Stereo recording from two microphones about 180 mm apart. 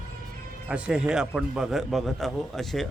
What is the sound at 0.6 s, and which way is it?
Speech, 5° right (ahead or behind).